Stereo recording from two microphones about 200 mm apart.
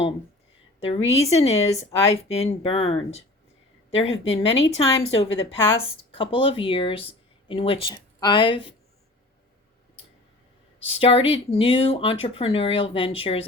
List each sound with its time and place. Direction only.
0.8 s a woman's voice: 30° left (ahead or behind)
10.8 s a woman's voice: 30° left (ahead or behind)